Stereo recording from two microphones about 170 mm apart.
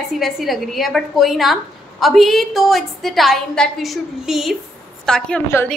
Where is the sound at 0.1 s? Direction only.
Centre (ahead or behind).